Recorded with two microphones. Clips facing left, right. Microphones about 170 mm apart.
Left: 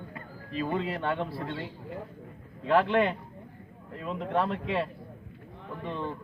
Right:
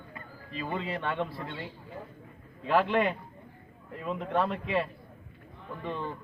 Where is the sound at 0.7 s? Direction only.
Centre (ahead or behind).